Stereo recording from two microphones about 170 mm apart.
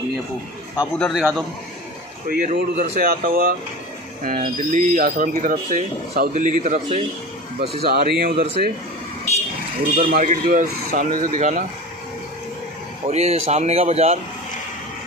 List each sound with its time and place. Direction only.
0.9 s a man's voice: 5° left (ahead or behind)
2.2 s speech: 55° right (ahead or behind)
7.8 s speech: 70° right (ahead or behind)
9.9 s speech: 55° right (ahead or behind)
13.0 s speech: 40° right (ahead or behind)